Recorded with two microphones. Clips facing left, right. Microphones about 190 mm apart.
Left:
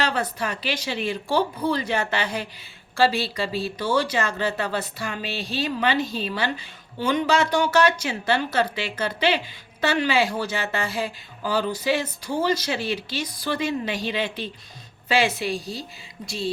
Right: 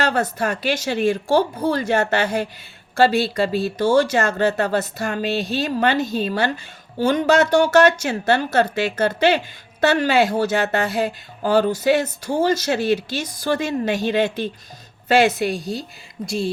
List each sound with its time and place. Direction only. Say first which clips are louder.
0.0 s speech: right 5 dB; 45° right (ahead or behind)